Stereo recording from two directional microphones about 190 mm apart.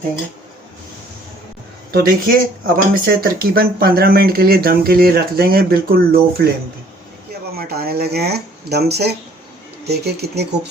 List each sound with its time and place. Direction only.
1.9 s speech: 50° right (ahead or behind)
7.5 s speech: 55° right (ahead or behind)